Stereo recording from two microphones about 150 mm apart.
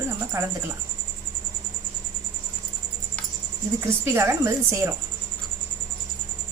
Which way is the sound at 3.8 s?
20° right (ahead or behind).